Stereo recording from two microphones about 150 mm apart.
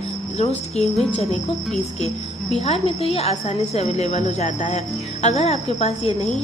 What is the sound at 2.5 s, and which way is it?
A woman's voice, 45° left (ahead or behind).